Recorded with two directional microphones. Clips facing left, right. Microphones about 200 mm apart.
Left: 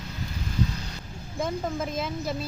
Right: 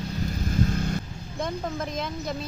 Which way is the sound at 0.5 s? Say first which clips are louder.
Right 4 dB; 50° right (ahead or behind).